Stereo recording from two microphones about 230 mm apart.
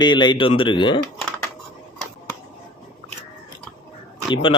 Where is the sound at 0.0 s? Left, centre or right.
Centre.